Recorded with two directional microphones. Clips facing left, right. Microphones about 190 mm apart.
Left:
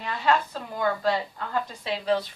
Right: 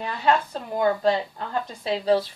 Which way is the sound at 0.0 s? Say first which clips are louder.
Right 2 dB; 30° right (ahead or behind).